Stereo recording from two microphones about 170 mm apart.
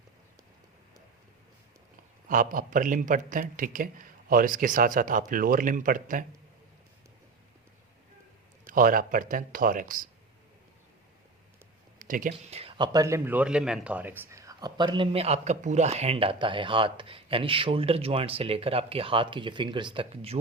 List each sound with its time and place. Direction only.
2.2 s a man's voice: 55° right (ahead or behind)
8.6 s a man's voice: 55° right (ahead or behind)
11.9 s a sound: 50° right (ahead or behind)
12.5 s speech: 35° right (ahead or behind)